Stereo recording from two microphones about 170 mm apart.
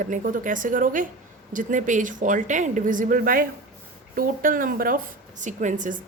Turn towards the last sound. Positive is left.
turn(degrees=-45)  # may be behind; listen again after turning